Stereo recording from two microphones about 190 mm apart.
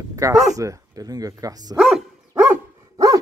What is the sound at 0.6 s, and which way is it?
Speech, 20° right (ahead or behind).